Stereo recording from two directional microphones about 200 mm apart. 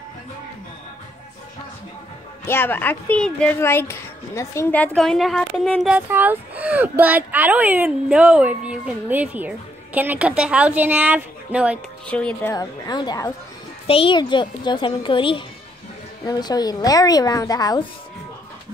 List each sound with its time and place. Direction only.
2.4 s a woman's voice: 10° left (ahead or behind); by 11.8 s 5° right (ahead or behind)
12.1 s speech: 5° left (ahead or behind)
12.5 s a woman's voice: 20° left (ahead or behind)